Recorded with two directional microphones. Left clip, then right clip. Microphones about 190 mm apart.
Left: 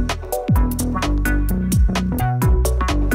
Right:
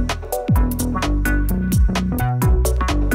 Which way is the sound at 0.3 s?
Centre (ahead or behind).